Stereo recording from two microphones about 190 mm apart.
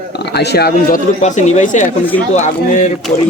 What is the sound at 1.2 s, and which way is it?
Speech, 40° left (ahead or behind).